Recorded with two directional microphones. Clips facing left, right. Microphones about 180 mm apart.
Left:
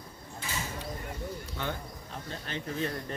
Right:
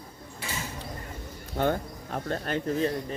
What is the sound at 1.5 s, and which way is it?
Bird, 50° right (ahead or behind).